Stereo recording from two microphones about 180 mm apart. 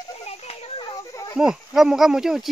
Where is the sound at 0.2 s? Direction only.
35° left (ahead or behind).